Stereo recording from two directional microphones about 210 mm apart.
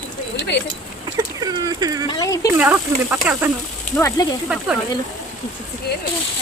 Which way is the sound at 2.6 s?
5° right (ahead or behind).